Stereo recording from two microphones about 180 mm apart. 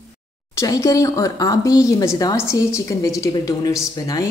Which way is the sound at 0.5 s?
20° left (ahead or behind).